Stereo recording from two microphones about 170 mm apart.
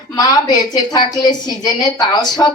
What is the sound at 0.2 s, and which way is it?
A woman's voice, 25° left (ahead or behind).